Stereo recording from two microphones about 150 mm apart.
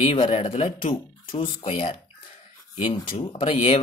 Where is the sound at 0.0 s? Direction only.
35° left (ahead or behind).